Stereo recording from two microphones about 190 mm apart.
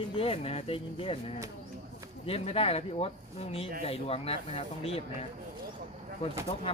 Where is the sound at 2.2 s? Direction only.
30° left (ahead or behind).